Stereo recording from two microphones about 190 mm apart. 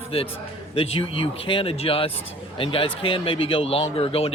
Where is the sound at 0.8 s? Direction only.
30° left (ahead or behind).